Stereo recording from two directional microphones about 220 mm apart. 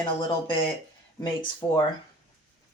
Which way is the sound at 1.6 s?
15° left (ahead or behind).